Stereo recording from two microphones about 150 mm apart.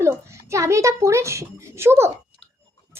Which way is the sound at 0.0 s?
20° right (ahead or behind).